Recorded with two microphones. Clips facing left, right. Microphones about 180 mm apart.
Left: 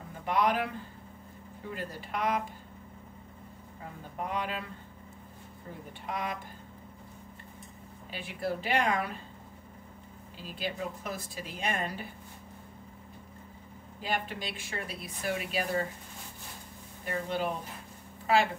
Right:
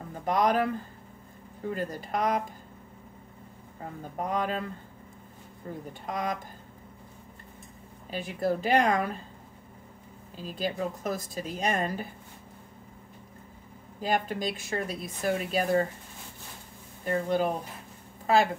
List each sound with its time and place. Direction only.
0.2 s speech: 40° right (ahead or behind)
1.7 s a woman's voice: 45° right (ahead or behind)
4.2 s speech: 45° right (ahead or behind)
6.0 s speech: 40° right (ahead or behind)
8.1 s speech: 45° right (ahead or behind)
10.3 s speech: 40° right (ahead or behind)
14.0 s speech: 45° right (ahead or behind)
17.0 s speech: 45° right (ahead or behind)